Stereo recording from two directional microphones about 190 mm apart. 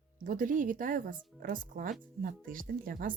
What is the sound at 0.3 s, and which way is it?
Speech, 45° right (ahead or behind).